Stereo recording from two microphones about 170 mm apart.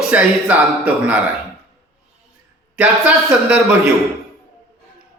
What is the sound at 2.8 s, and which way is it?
Speech, 5° right (ahead or behind).